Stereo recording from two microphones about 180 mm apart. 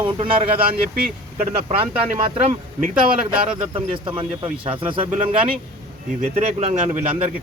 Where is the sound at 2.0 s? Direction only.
45° right (ahead or behind).